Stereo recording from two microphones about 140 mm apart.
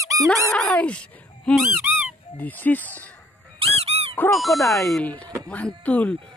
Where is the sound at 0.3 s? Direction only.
5° left (ahead or behind).